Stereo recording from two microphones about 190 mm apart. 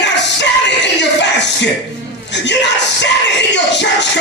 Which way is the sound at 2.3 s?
65° left (ahead or behind).